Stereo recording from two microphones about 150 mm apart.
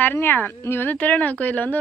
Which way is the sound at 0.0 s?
15° left (ahead or behind).